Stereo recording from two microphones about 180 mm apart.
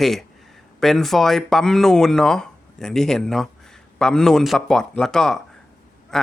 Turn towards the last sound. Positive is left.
turn(degrees=0)  # may be behind; listen again after turning